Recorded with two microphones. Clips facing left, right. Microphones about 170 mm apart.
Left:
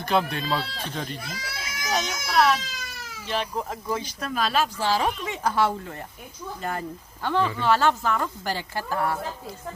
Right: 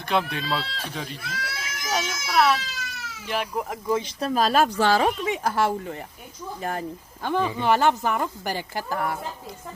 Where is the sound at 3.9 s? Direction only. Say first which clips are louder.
Right 6 dB; 25° right (ahead or behind); by 4.7 s 45° right (ahead or behind).